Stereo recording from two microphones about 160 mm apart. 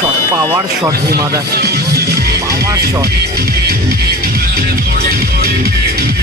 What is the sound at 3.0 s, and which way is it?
Speech, 75° right (ahead or behind).